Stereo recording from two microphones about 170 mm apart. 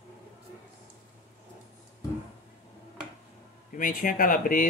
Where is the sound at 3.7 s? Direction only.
55° left (ahead or behind).